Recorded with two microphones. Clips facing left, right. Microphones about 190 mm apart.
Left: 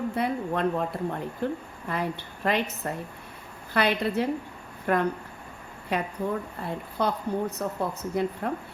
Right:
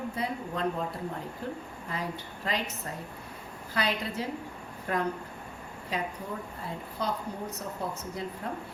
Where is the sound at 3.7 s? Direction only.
65° left (ahead or behind).